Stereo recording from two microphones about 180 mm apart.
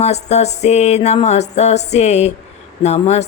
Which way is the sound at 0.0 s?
35° left (ahead or behind).